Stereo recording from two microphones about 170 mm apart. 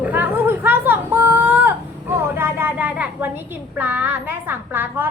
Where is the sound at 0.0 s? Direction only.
10° right (ahead or behind).